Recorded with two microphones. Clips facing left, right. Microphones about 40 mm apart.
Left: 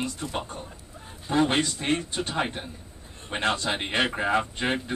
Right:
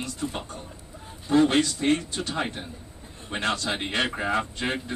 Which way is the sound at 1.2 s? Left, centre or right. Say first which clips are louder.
Right 3 dB; left.